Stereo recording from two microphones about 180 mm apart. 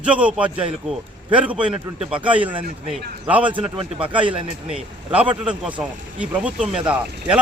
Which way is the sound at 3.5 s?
30° right (ahead or behind).